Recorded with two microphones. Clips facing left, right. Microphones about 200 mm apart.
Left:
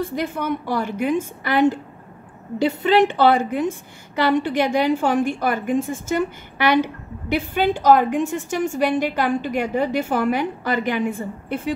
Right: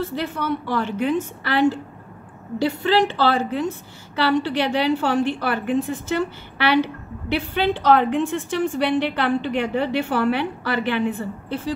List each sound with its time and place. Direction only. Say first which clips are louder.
0.1 s a woman's voice: left 1 dB; 15° left (ahead or behind)
4.4 s a woman's voice: left 2 dB; 50° left (ahead or behind)
4.7 s a woman's voice: even; 15° left (ahead or behind)